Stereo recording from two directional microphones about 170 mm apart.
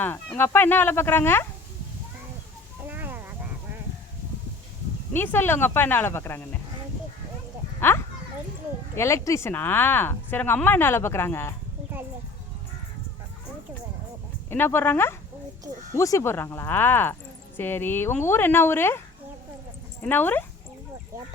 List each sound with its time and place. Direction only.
0.0 s speech: 10° left (ahead or behind)
2.8 s a sound: 10° right (ahead or behind)
5.1 s speech: 10° left (ahead or behind)
7.8 s a sound: 15° left (ahead or behind)
9.0 s speech: 15° left (ahead or behind)
14.5 s speech: 15° left (ahead or behind)